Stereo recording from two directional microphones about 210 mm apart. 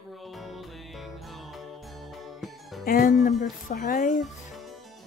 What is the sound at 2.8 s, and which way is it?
Speech, 40° left (ahead or behind).